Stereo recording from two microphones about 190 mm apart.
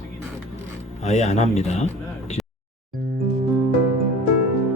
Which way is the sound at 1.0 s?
35° left (ahead or behind).